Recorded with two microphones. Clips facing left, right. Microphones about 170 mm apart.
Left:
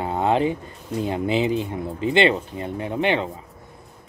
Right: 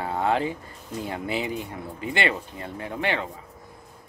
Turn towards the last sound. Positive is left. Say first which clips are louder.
# left 6 dB
turn(degrees=20)  # may be behind; listen again after turning